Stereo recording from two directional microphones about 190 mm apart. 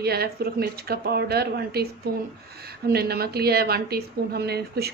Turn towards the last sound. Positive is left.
turn(degrees=-55)  # may be behind; listen again after turning